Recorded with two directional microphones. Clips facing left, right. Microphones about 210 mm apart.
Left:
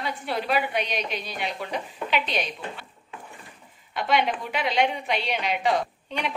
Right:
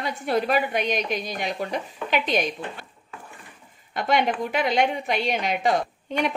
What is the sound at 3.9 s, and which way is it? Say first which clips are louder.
A woman's voice: right 2 dB; 45° right (ahead or behind).